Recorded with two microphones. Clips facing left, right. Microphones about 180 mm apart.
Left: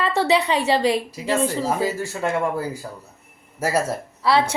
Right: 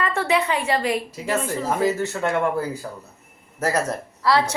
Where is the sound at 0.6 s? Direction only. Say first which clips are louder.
Left 3 dB; 30° left (ahead or behind).